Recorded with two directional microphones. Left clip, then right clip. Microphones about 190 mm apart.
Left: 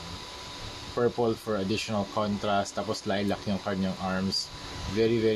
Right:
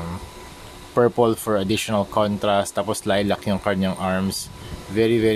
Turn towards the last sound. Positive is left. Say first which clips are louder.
# right 6 dB
turn(degrees=-40)  # may be behind; listen again after turning